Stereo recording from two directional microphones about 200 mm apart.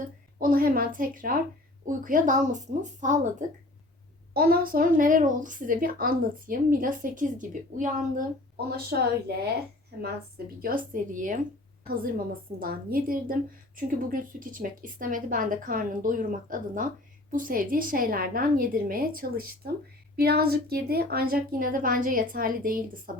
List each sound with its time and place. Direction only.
0.3 s a woman's voice: 45° right (ahead or behind)
4.4 s a woman's voice: 50° right (ahead or behind)
8.7 s a woman's voice: 50° right (ahead or behind)